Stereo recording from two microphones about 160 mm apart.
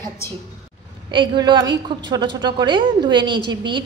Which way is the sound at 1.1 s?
30° right (ahead or behind).